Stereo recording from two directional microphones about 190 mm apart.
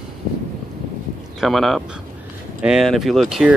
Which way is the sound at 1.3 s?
Centre (ahead or behind).